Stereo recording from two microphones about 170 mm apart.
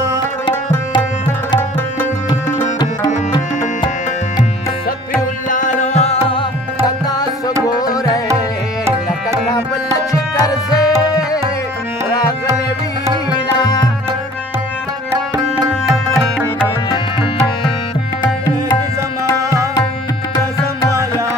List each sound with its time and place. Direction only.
5.5 s music: 50° left (ahead or behind)
7.1 s tabla: 20° left (ahead or behind)
7.6 s music: 20° left (ahead or behind)
10.1 s tabla: 20° left (ahead or behind)
13.6 s music: 25° left (ahead or behind)